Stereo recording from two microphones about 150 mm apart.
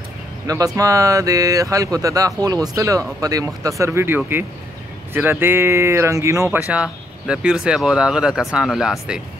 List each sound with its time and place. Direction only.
0.5 s speech: 20° right (ahead or behind); by 9.2 s 5° right (ahead or behind)